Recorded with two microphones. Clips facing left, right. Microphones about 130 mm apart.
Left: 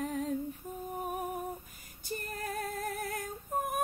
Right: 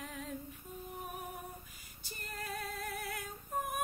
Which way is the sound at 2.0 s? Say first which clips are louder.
Left 7 dB; 45° left (ahead or behind).